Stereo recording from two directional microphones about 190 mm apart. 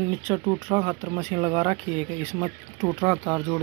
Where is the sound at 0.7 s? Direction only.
20° right (ahead or behind).